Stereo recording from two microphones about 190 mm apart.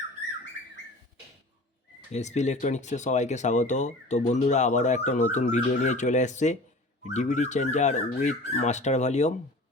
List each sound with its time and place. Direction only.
2.1 s speech: 35° left (ahead or behind)